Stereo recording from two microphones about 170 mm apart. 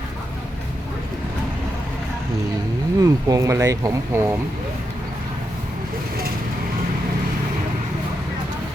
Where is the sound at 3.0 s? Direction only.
20° right (ahead or behind).